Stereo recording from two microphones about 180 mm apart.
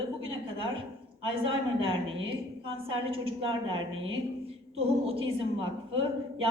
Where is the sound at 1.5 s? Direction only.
30° right (ahead or behind).